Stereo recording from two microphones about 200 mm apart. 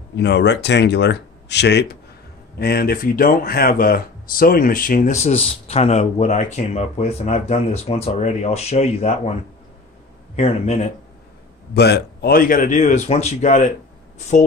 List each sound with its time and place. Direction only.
0.1 s a man's voice: 60° left (ahead or behind); by 9.3 s 30° left (ahead or behind)
10.3 s a man's voice: 35° left (ahead or behind)
11.7 s a man's voice: 55° left (ahead or behind); by 14.4 s 35° left (ahead or behind)